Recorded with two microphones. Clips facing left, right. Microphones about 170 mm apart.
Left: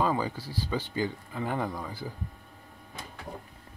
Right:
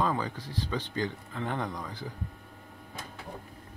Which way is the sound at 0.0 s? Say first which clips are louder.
Left 2 dB; 10° left (ahead or behind).